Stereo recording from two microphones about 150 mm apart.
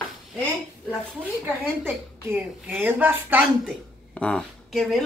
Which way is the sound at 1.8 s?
15° right (ahead or behind).